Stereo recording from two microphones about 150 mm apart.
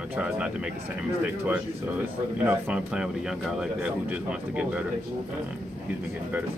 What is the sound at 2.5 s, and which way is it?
Speech, 10° right (ahead or behind).